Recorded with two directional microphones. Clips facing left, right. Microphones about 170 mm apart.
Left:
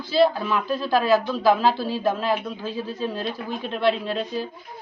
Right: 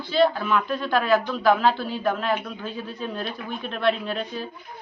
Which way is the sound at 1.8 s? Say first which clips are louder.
Left 2 dB; 35° left (ahead or behind).